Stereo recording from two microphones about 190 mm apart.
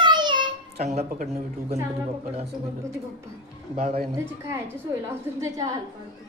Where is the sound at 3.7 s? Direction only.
35° right (ahead or behind).